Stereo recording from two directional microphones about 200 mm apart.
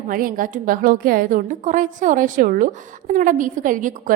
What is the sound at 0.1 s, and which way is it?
A woman's voice, 45° right (ahead or behind).